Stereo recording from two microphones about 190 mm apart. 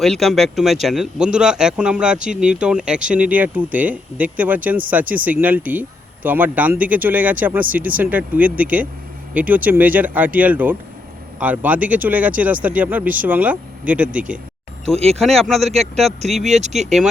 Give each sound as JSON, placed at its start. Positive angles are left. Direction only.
{"t": 0.0, "sound": "speech", "side_deg": 0}
{"t": 14.8, "sound": "speech", "side_deg": -35}
{"t": 15.2, "sound": "speech", "side_deg": 0}
{"t": 16.5, "sound": "speech", "side_deg": -35}